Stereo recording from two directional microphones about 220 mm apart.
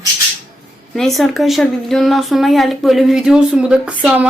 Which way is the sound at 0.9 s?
Centre (ahead or behind).